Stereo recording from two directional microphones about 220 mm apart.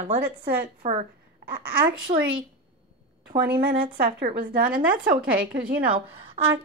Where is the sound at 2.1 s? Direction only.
25° right (ahead or behind).